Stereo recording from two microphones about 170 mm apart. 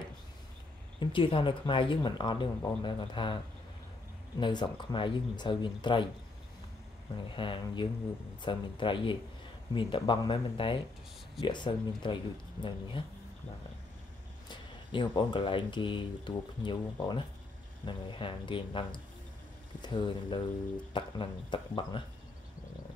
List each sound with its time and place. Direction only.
0.9 s speech: 30° left (ahead or behind)
4.4 s speech: 25° left (ahead or behind)
7.3 s speech: 30° left (ahead or behind)
14.5 s speech: 25° left (ahead or behind)